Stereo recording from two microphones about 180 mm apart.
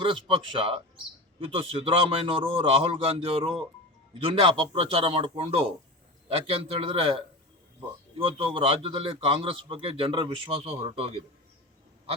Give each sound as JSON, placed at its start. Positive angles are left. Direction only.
{"t": 0.0, "sound": "a man's voice", "side_deg": -30}
{"t": 8.4, "sound": "a man's voice", "side_deg": -30}